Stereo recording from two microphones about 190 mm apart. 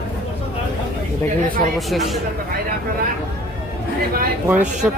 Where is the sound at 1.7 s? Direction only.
Centre (ahead or behind).